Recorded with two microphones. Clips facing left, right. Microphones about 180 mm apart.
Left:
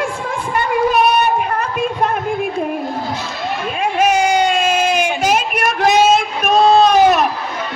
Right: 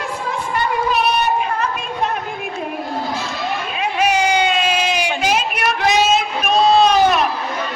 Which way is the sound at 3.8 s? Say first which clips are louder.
Left 3 dB; 45° left (ahead or behind).